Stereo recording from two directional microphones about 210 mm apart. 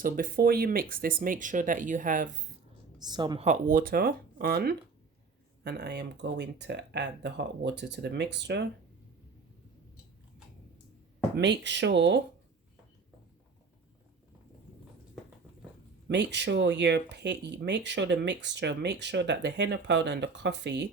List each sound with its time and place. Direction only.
0.0 s speech: 45° right (ahead or behind)
3.0 s a woman's voice: 20° right (ahead or behind)
3.4 s speech: 40° right (ahead or behind); by 8.6 s 55° right (ahead or behind)
11.3 s speech: 55° right (ahead or behind)
16.0 s speech: 55° right (ahead or behind)